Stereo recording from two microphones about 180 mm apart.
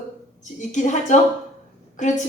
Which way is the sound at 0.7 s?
45° left (ahead or behind).